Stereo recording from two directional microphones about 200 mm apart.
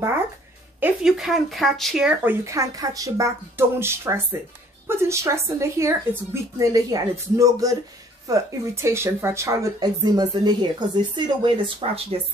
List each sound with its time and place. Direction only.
0.7 s speech: 5° right (ahead or behind); by 12.2 s 25° right (ahead or behind)